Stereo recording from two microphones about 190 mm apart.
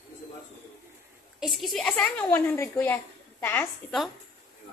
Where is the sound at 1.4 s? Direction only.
Centre (ahead or behind).